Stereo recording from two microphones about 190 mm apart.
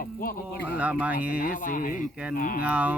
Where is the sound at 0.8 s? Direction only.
5° right (ahead or behind).